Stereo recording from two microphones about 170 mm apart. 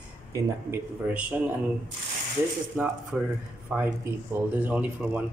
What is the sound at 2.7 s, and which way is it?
Speech, 5° right (ahead or behind).